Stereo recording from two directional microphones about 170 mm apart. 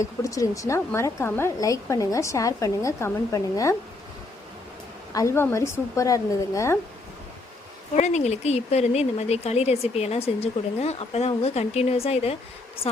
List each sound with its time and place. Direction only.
0.0 s a woman's voice: 20° left (ahead or behind)
5.1 s a woman's voice: 15° left (ahead or behind)
7.9 s speech: 40° left (ahead or behind)